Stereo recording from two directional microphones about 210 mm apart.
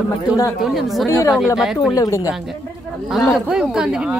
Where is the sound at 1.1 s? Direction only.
15° left (ahead or behind).